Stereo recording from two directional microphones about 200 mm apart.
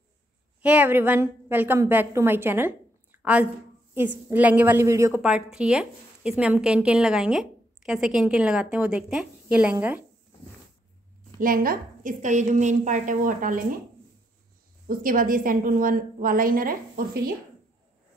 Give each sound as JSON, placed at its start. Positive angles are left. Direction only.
{"t": 0.6, "sound": "a woman's voice", "side_deg": -5}
{"t": 11.3, "sound": "a woman's voice", "side_deg": -45}
{"t": 14.9, "sound": "a woman's voice", "side_deg": -45}